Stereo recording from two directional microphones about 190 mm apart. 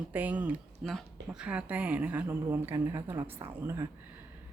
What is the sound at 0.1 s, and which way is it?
Speech, 10° right (ahead or behind).